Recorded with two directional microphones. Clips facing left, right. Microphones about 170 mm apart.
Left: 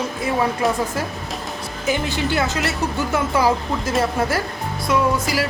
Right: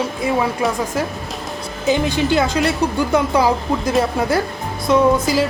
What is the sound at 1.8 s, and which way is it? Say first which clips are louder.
Speech: right 5 dB; 20° right (ahead or behind).